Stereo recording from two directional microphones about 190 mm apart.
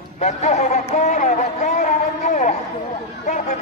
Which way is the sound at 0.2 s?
35° left (ahead or behind).